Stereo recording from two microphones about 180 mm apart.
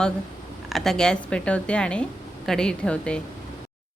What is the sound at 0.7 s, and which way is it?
Speech, centre (ahead or behind).